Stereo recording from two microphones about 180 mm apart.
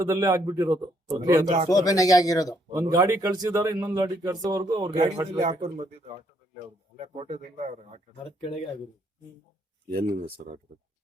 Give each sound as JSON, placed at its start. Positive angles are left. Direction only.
{"t": 0.0, "sound": "a man's voice", "side_deg": -20}
{"t": 1.7, "sound": "speech", "side_deg": 20}
{"t": 2.7, "sound": "a man's voice", "side_deg": -20}
{"t": 5.4, "sound": "speech", "side_deg": -40}
{"t": 8.1, "sound": "speech", "side_deg": 30}
{"t": 9.9, "sound": "speech", "side_deg": -55}